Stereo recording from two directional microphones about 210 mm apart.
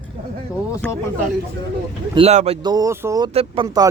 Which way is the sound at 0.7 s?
15° left (ahead or behind).